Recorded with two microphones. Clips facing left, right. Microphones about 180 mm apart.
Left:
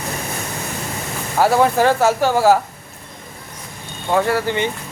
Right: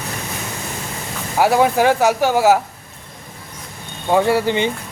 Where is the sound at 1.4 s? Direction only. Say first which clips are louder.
Even; 10° right (ahead or behind).